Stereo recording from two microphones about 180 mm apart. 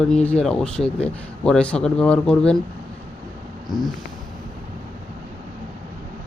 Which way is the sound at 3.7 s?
Centre (ahead or behind).